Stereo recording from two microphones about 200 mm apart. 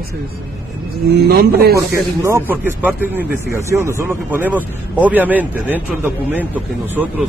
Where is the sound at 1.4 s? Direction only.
50° right (ahead or behind).